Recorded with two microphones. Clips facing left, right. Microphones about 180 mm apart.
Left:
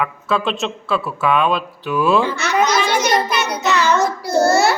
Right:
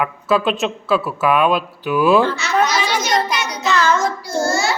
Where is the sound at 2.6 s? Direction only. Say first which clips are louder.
Left 3 dB; 60° left (ahead or behind).